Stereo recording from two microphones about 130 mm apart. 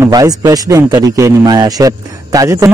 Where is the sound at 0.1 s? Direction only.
25° right (ahead or behind).